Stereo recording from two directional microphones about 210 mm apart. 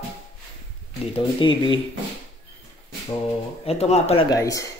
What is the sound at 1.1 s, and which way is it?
Speech, 25° left (ahead or behind).